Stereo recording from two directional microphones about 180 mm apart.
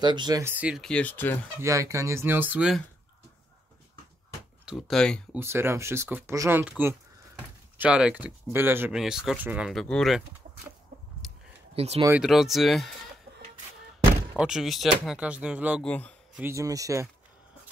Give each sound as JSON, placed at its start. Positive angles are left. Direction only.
{"t": 0.0, "sound": "speech", "side_deg": -25}
{"t": 1.6, "sound": "speech", "side_deg": -15}
{"t": 4.6, "sound": "speech", "side_deg": 0}
{"t": 5.3, "sound": "speech", "side_deg": -15}
{"t": 11.2, "sound": "a sound", "side_deg": 5}
{"t": 11.7, "sound": "speech", "side_deg": -35}
{"t": 12.1, "sound": "speech", "side_deg": -5}
{"t": 14.3, "sound": "speech", "side_deg": -5}
{"t": 15.8, "sound": "speech", "side_deg": 5}
{"t": 16.3, "sound": "speech", "side_deg": -15}